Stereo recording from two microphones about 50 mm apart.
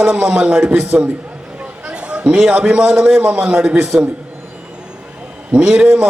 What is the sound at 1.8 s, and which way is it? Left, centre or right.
A man's voice, right.